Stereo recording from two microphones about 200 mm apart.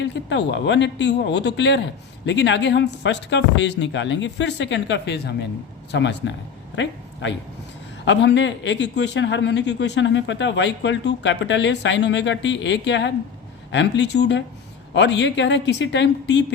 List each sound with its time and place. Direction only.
0.0 s a man's voice: 60° left (ahead or behind)